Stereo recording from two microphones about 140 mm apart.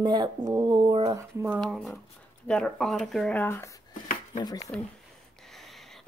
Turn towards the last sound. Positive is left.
turn(degrees=0)  # may be behind; listen again after turning